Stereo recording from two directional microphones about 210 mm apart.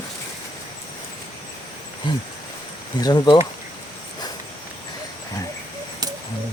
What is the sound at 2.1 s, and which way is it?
Speech, 20° left (ahead or behind).